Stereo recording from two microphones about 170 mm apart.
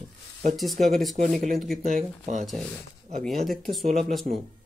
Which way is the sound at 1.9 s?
45° right (ahead or behind).